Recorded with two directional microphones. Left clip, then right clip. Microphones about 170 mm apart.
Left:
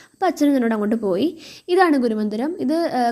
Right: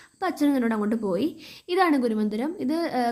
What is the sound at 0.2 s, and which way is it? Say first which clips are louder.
A woman's voice: left 6 dB; 25° left (ahead or behind).